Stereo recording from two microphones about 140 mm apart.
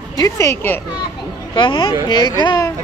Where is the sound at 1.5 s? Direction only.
35° left (ahead or behind).